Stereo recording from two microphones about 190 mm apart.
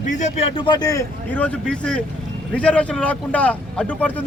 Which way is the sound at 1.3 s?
5° left (ahead or behind).